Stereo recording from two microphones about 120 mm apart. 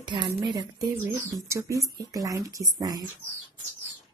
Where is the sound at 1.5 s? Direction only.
25° right (ahead or behind).